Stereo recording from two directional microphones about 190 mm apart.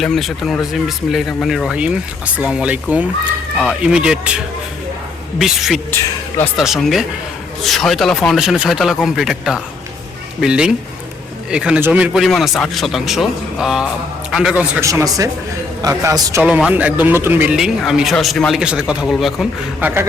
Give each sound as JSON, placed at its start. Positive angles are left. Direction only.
{"t": 0.0, "sound": "a man's voice", "side_deg": 0}